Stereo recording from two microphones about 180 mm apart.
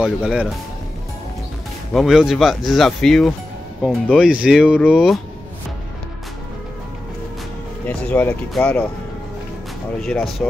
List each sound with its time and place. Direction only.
0.0 s speech: 5° right (ahead or behind)
2.0 s speech: centre (ahead or behind)
7.8 s speech: 10° left (ahead or behind)
10.0 s speech: 5° left (ahead or behind)